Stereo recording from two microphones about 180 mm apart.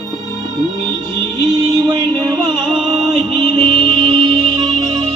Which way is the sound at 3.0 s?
Centre (ahead or behind).